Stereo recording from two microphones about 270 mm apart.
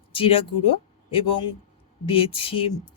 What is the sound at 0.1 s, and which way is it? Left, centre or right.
Speech, centre.